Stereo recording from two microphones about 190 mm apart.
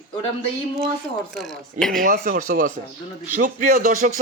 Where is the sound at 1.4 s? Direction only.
Centre (ahead or behind).